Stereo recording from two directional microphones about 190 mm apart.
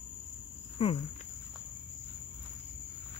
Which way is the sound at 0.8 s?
30° left (ahead or behind).